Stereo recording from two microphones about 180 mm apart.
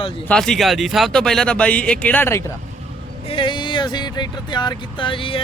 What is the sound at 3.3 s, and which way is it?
Speech, 25° left (ahead or behind).